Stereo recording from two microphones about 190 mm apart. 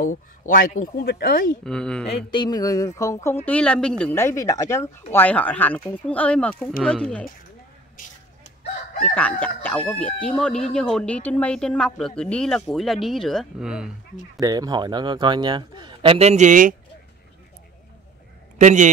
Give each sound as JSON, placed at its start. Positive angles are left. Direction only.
{"t": 0.0, "sound": "speech", "side_deg": 45}
{"t": 1.6, "sound": "speech", "side_deg": 5}
{"t": 2.0, "sound": "a sound", "side_deg": 25}
{"t": 3.0, "sound": "speech", "side_deg": 15}
{"t": 9.1, "sound": "speech", "side_deg": 10}
{"t": 14.4, "sound": "a man's voice", "side_deg": -20}
{"t": 18.6, "sound": "a man's voice", "side_deg": -40}